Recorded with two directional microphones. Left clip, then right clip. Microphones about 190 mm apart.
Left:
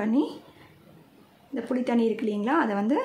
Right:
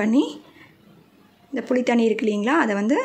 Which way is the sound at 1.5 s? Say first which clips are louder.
Right 6 dB; 20° right (ahead or behind).